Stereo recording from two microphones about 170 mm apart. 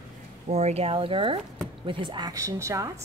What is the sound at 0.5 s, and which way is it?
A woman's voice, 40° right (ahead or behind).